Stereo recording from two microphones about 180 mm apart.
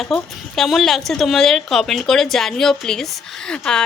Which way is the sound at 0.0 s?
Centre (ahead or behind).